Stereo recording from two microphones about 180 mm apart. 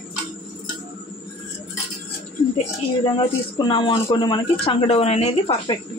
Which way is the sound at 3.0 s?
25° left (ahead or behind).